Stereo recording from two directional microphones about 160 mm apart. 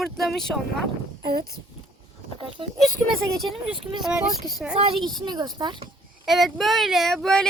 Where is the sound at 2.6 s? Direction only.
30° right (ahead or behind).